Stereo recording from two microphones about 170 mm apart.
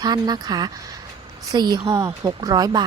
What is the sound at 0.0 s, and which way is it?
Speech, 25° right (ahead or behind).